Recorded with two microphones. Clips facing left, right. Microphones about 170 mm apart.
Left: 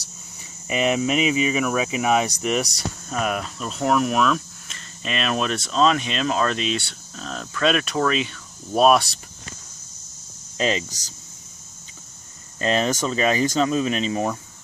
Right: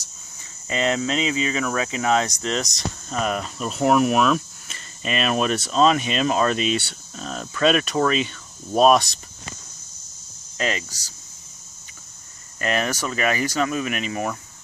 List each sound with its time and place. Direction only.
0.7 s speech: 15° left (ahead or behind)
10.6 s speech: 20° left (ahead or behind)
12.5 s speech: 25° left (ahead or behind)